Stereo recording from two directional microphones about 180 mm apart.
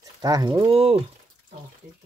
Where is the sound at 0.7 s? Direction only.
35° right (ahead or behind).